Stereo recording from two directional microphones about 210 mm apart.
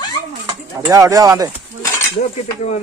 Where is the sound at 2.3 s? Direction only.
30° left (ahead or behind).